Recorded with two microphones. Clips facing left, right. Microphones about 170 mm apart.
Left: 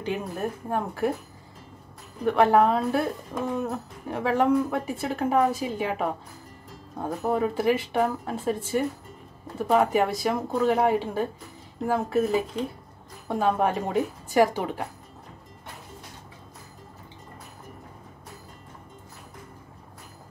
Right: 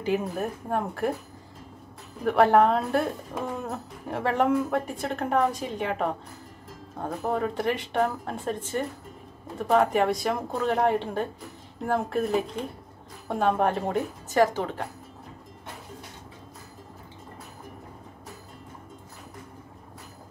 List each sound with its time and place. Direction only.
0.0 s speech: centre (ahead or behind)
2.2 s speech: centre (ahead or behind)